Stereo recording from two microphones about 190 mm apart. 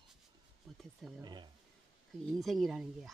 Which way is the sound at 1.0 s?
Centre (ahead or behind).